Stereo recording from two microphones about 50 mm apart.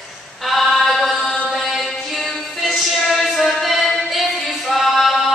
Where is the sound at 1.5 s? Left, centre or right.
Centre.